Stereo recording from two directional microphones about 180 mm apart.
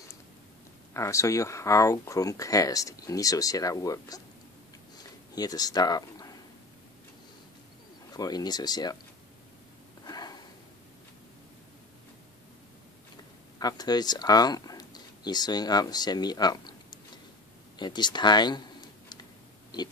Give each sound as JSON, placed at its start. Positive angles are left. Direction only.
{"t": 0.9, "sound": "speech", "side_deg": 15}
{"t": 5.3, "sound": "speech", "side_deg": 20}
{"t": 8.1, "sound": "speech", "side_deg": 20}
{"t": 10.0, "sound": "sniff", "side_deg": 20}
{"t": 13.6, "sound": "speech", "side_deg": 20}